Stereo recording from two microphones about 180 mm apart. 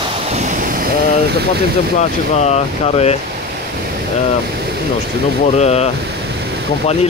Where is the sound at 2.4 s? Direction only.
35° left (ahead or behind).